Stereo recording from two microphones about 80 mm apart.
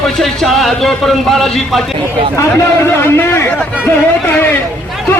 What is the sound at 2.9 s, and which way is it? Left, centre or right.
Speech, left.